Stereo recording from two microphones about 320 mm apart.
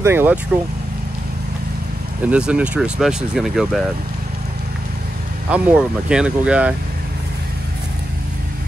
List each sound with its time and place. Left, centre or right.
0.0 s speech: centre
2.2 s speech: centre
5.5 s speech: centre